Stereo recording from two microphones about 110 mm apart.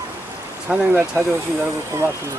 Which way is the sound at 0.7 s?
10° right (ahead or behind).